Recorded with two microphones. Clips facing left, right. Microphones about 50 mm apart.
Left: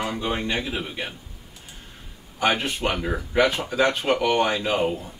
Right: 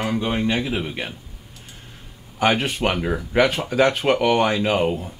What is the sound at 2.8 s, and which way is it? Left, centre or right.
Speech, right.